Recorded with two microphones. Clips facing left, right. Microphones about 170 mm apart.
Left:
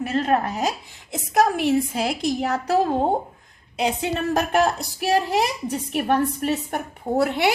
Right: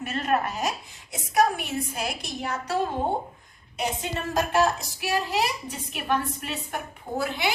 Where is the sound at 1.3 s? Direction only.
90° left.